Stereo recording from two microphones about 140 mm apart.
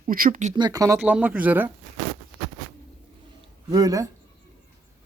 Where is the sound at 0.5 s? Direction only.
30° right (ahead or behind).